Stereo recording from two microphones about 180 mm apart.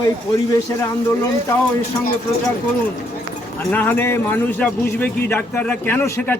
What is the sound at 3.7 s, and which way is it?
A man's voice, 10° left (ahead or behind).